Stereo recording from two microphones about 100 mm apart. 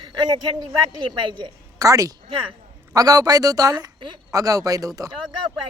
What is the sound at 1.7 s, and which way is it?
Speech, 35° right (ahead or behind).